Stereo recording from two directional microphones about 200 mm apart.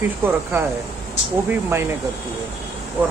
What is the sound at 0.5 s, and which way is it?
Speech, 10° right (ahead or behind).